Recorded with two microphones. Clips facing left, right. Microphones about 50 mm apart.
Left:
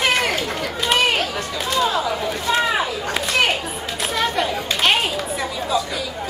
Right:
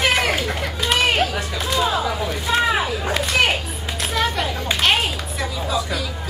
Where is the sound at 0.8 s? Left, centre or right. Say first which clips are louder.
Even; centre.